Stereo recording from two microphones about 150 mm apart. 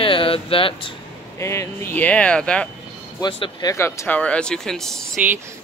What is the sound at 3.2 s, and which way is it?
Speech, 30° left (ahead or behind).